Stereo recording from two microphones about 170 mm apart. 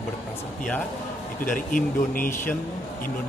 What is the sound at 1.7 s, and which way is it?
Speech, 55° left (ahead or behind).